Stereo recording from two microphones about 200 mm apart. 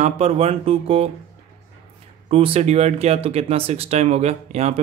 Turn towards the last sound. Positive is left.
turn(degrees=-35)  # may be behind; listen again after turning